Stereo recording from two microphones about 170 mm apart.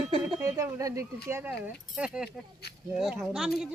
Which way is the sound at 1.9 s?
5° right (ahead or behind).